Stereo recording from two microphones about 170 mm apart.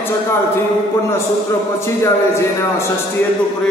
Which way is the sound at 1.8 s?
15° left (ahead or behind).